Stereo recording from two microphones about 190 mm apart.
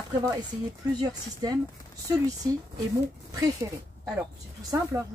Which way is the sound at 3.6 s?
15° right (ahead or behind).